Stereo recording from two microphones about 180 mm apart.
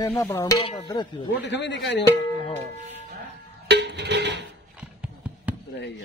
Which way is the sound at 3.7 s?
75° right (ahead or behind).